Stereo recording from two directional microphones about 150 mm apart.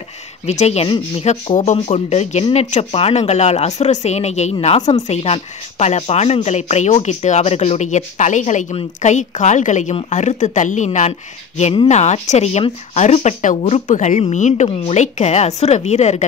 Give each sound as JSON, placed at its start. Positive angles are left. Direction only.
{"t": 0.5, "sound": "speech", "side_deg": 45}
{"t": 0.8, "sound": "speech", "side_deg": 35}
{"t": 1.2, "sound": "speech", "side_deg": 45}